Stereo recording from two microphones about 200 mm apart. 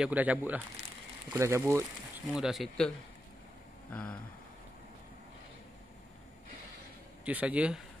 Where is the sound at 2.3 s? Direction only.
Centre (ahead or behind).